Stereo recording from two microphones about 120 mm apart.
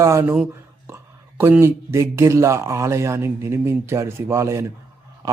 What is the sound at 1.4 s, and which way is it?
Speech, 20° right (ahead or behind).